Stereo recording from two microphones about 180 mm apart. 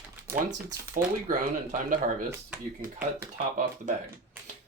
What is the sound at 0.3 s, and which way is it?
Speech, 20° right (ahead or behind).